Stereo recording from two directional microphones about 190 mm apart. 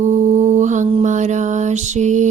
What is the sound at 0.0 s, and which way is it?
Mantra, 40° right (ahead or behind).